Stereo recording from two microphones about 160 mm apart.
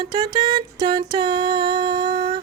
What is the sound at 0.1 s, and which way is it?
Music, 25° right (ahead or behind).